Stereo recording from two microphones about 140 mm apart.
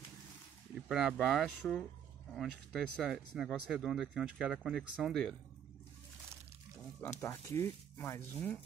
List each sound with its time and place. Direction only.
0.8 s speech: centre (ahead or behind)
7.0 s speech: 20° left (ahead or behind)